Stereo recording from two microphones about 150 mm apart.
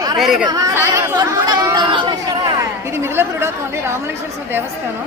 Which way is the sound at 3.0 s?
15° right (ahead or behind).